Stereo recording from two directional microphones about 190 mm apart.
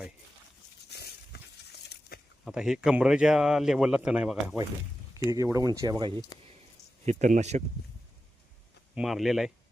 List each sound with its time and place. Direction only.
0.9 s a sound: 60° left (ahead or behind)
2.4 s speech: centre (ahead or behind)
5.3 s speech: 15° right (ahead or behind)
7.0 s speech: 35° right (ahead or behind)
9.0 s speech: centre (ahead or behind)